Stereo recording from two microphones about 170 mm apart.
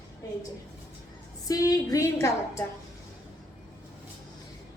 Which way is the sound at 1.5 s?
20° left (ahead or behind).